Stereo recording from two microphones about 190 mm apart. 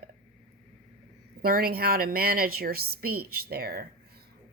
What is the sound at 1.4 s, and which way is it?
A woman's voice, 50° right (ahead or behind).